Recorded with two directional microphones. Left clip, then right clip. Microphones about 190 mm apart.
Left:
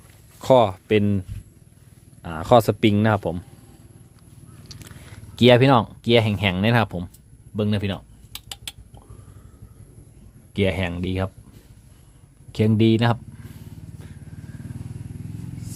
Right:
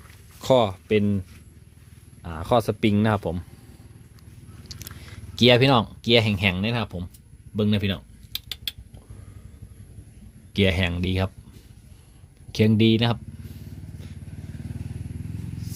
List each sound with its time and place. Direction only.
0.4 s speech: 10° left (ahead or behind)
2.2 s speech: 15° left (ahead or behind)
4.6 s a sound: 10° left (ahead or behind)
6.7 s speech: 20° left (ahead or behind)
7.5 s typing: centre (ahead or behind)
10.5 s speech: centre (ahead or behind)
12.5 s speech: centre (ahead or behind)